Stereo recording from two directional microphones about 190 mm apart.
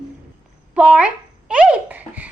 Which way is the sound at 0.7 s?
5° right (ahead or behind).